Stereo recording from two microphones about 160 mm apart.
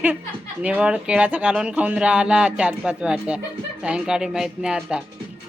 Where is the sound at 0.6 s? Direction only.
5° right (ahead or behind).